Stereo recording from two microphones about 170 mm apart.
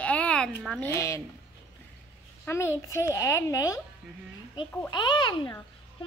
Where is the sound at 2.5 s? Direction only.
15° left (ahead or behind).